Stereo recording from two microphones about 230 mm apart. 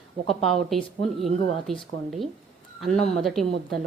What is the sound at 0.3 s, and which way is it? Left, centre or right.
A woman's voice, centre.